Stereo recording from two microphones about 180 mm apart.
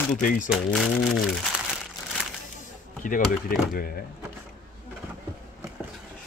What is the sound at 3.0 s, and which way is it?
Speech, 50° left (ahead or behind).